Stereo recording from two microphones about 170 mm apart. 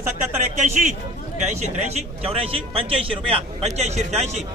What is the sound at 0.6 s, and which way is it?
A man's voice, 45° right (ahead or behind).